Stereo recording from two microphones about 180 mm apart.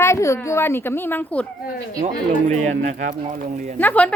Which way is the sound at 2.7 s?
45° right (ahead or behind).